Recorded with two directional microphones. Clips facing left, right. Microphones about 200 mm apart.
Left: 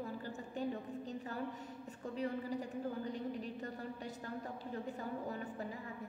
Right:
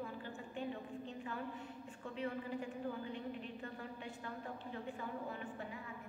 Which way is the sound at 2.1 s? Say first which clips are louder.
Left 3 dB; 40° left (ahead or behind).